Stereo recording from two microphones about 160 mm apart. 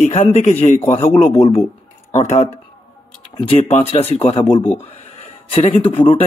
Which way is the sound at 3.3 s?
35° left (ahead or behind).